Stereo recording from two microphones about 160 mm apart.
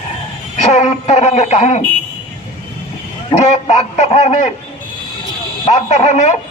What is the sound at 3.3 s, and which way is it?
A man's voice, 45° left (ahead or behind).